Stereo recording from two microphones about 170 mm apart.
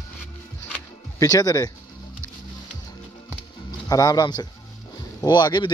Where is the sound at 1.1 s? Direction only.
20° left (ahead or behind).